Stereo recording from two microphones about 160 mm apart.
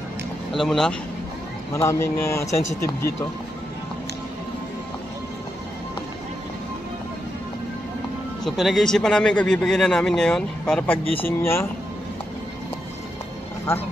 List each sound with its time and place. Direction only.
0.5 s speech: centre (ahead or behind)
1.7 s speech: 20° left (ahead or behind)
8.5 s speech: centre (ahead or behind); by 11.7 s 15° left (ahead or behind)